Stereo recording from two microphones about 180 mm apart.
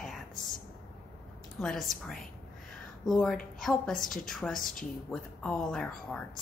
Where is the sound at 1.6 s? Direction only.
Centre (ahead or behind).